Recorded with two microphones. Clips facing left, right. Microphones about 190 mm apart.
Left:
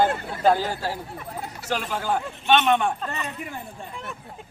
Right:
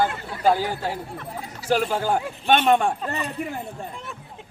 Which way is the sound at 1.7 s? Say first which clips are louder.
Right 5 dB; 35° right (ahead or behind).